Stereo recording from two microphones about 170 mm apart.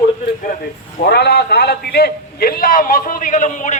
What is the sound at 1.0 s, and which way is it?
A man's voice, 75° left (ahead or behind).